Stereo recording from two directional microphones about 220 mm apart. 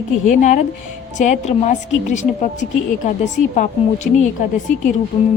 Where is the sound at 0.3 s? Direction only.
35° left (ahead or behind).